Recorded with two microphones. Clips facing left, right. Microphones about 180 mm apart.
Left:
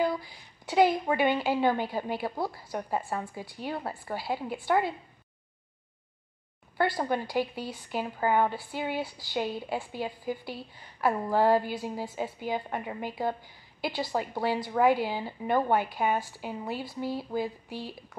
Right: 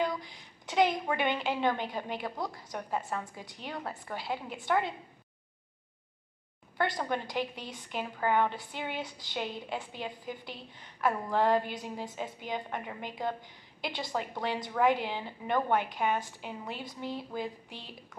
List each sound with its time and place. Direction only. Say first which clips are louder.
0.2 s a woman's voice: even; 5° left (ahead or behind)
3.0 s a woman's voice: left 3 dB; 25° left (ahead or behind)
3.8 s a woman's voice: left 4 dB; 10° left (ahead or behind)
7.1 s a woman's voice: left 4 dB; 5° left (ahead or behind)